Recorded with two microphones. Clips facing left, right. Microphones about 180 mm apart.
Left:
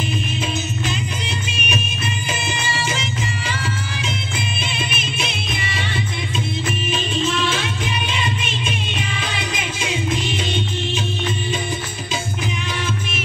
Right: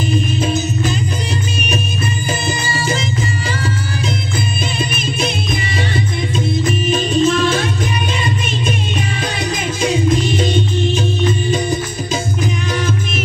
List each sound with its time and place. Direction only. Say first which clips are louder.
0.1 s music: right 7 dB; 40° right (ahead or behind)
2.4 s music: right 5 dB; 35° right (ahead or behind)
4.7 s music: right 6 dB; 40° right (ahead or behind)
6.6 s music: right 7 dB; 40° right (ahead or behind)